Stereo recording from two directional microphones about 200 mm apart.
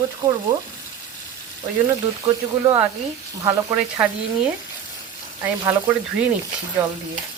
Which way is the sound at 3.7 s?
5° right (ahead or behind).